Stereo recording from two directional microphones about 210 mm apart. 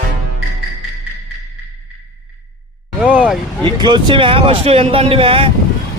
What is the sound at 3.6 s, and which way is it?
Speech, 20° right (ahead or behind).